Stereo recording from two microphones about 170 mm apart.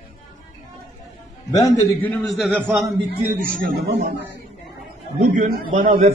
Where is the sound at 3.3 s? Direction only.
55° right (ahead or behind).